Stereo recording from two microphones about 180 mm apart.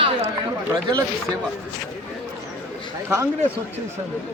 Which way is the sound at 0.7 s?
20° right (ahead or behind).